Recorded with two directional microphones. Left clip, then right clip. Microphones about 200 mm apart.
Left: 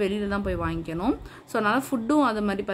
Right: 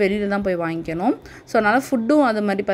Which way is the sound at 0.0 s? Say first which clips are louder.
Right 7 dB; 20° right (ahead or behind).